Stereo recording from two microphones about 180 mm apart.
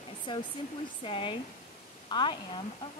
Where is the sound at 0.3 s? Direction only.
25° left (ahead or behind).